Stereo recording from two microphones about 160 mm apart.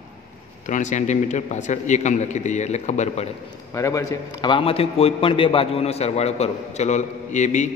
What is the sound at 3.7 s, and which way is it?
A man's voice, 20° left (ahead or behind).